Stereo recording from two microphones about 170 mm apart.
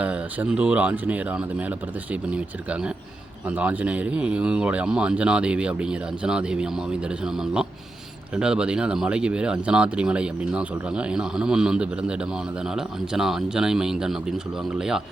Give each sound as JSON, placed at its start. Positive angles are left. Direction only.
{"t": 0.0, "sound": "speech", "side_deg": -10}